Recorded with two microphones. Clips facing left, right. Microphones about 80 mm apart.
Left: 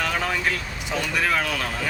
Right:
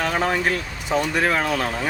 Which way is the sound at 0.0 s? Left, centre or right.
Right.